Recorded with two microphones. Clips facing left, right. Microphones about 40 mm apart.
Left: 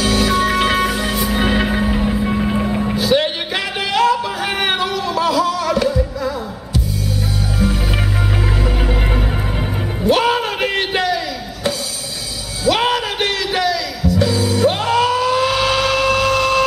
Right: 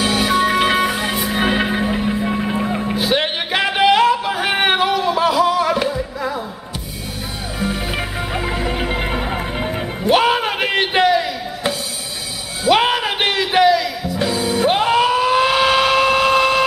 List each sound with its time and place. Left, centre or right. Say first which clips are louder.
0.0 s music: even; centre
3.0 s music: left 3 dB; right
8.6 s music: even; right